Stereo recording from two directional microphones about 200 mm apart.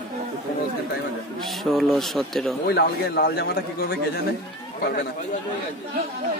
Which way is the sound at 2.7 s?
50° left (ahead or behind).